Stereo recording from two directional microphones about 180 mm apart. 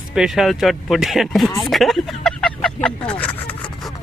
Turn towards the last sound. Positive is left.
turn(degrees=5)  # may be behind; listen again after turning